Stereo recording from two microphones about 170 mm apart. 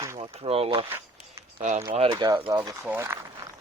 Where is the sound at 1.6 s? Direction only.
45° right (ahead or behind).